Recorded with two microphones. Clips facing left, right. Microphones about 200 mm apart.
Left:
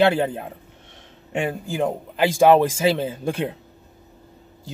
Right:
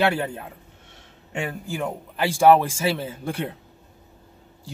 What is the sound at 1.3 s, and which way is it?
Speech, 20° left (ahead or behind).